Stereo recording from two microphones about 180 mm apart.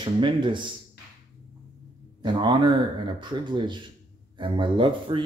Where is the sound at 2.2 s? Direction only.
25° right (ahead or behind).